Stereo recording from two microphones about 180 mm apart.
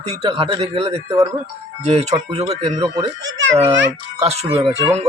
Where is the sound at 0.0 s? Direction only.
35° right (ahead or behind).